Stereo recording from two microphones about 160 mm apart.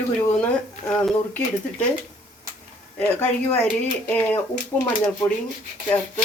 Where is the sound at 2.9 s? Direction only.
10° left (ahead or behind).